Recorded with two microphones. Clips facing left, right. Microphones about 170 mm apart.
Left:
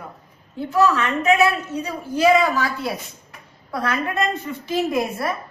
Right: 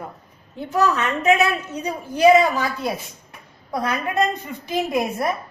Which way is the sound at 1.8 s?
20° right (ahead or behind).